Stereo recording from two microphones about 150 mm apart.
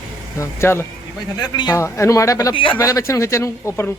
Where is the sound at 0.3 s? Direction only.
15° left (ahead or behind).